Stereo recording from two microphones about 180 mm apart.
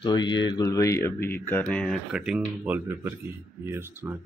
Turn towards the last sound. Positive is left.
turn(degrees=-10)  # may be behind; listen again after turning